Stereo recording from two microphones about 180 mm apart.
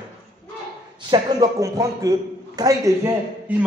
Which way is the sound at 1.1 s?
20° right (ahead or behind).